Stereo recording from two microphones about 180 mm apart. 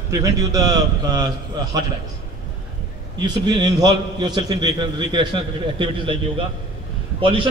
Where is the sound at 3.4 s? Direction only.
25° right (ahead or behind).